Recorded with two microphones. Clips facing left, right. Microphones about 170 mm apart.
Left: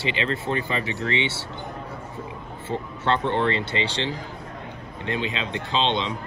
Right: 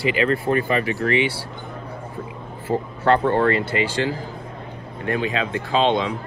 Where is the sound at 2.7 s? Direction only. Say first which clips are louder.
Right 6 dB; 50° right (ahead or behind).